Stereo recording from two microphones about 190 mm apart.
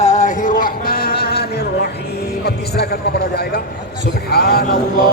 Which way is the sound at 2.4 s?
55° left (ahead or behind).